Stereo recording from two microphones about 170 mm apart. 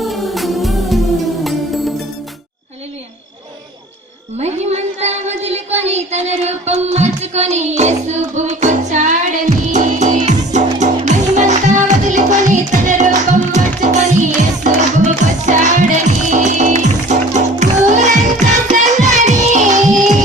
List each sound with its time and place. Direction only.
0.0 s music: centre (ahead or behind)
4.4 s child singing: 40° right (ahead or behind)
9.5 s music: 45° right (ahead or behind)